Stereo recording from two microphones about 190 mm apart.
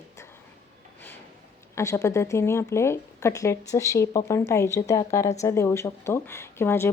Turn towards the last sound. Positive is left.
turn(degrees=10)  # may be behind; listen again after turning